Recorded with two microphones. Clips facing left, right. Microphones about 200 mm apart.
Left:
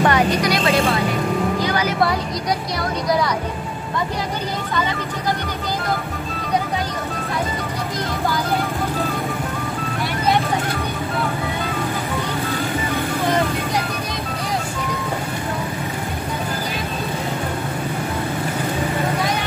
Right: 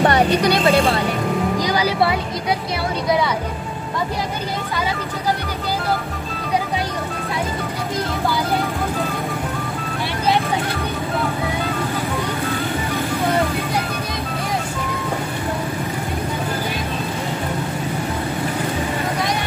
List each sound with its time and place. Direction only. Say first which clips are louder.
0.0 s vehicle: right 2 dB; 30° right (ahead or behind)
1.7 s music: right 1 dB; 10° right (ahead or behind)